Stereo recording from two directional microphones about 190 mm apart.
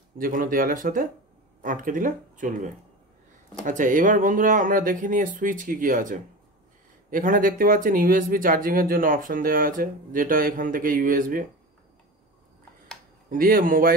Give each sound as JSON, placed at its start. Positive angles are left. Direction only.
{"t": 0.2, "sound": "speech", "side_deg": -45}
{"t": 13.3, "sound": "speech", "side_deg": -45}